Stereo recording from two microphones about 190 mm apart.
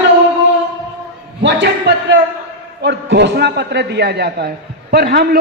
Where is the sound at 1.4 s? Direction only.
65° right (ahead or behind).